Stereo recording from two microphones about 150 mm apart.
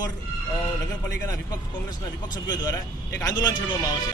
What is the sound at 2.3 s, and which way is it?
Speech, 25° left (ahead or behind).